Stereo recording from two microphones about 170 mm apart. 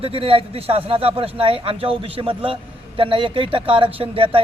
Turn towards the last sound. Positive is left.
turn(degrees=-30)  # may be behind; listen again after turning